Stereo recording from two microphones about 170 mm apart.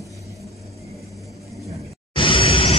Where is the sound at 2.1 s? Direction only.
30° left (ahead or behind).